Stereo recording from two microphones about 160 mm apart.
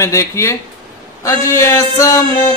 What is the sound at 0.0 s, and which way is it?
Music, 20° left (ahead or behind).